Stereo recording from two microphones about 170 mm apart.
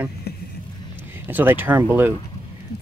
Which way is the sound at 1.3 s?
10° right (ahead or behind).